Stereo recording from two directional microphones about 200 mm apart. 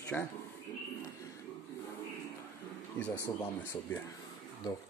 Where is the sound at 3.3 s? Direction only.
15° left (ahead or behind).